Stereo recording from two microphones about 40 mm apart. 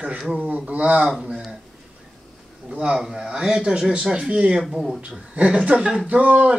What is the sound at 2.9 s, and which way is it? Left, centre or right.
Speech, centre.